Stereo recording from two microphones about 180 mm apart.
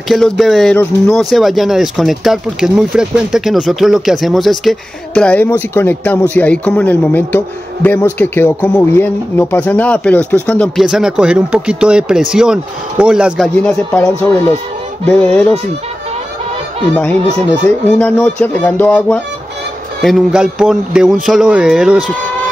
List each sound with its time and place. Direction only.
0.1 s a man's voice: centre (ahead or behind)
15.0 s a man's voice: 5° left (ahead or behind)
16.9 s a man's voice: 10° left (ahead or behind)